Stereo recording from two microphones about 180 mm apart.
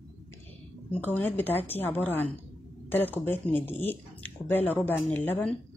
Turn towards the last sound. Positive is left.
turn(degrees=10)  # may be behind; listen again after turning